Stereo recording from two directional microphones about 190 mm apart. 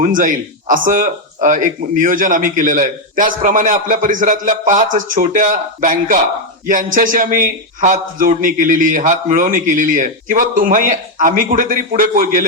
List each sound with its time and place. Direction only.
0.0 s speech: 45° right (ahead or behind)